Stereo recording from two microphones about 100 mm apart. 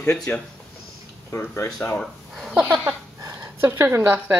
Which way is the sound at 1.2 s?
25° left (ahead or behind).